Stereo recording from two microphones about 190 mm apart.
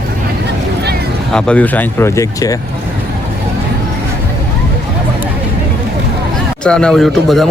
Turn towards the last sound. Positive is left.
turn(degrees=0)  # may be behind; listen again after turning